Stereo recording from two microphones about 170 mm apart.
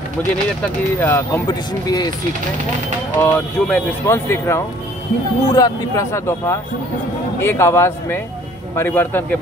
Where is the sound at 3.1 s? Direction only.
10° left (ahead or behind).